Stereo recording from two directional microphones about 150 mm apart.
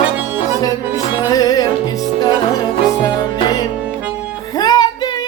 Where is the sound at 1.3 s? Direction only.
25° left (ahead or behind).